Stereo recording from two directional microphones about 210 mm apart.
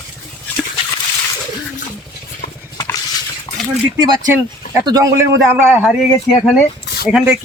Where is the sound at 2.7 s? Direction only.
15° left (ahead or behind).